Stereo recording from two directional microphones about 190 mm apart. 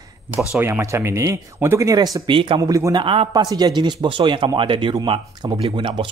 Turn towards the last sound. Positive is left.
turn(degrees=-25)  # may be behind; listen again after turning